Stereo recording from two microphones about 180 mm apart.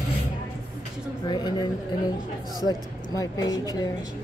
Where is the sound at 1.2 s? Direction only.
25° left (ahead or behind).